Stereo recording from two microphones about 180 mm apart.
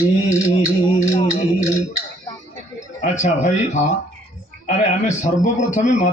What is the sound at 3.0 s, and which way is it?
Speech, 40° left (ahead or behind).